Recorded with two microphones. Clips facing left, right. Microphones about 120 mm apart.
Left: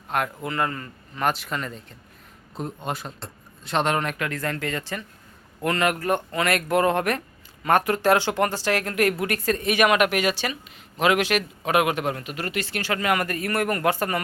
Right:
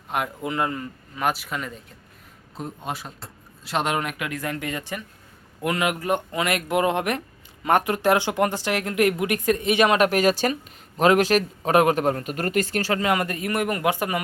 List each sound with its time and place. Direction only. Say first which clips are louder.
0.1 s speech: even; 15° right (ahead or behind); by 13.0 s 40° right (ahead or behind)
13.0 s speech: right 1 dB; 25° right (ahead or behind)